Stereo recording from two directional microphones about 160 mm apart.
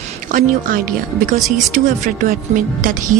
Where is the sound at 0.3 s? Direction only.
55° right (ahead or behind).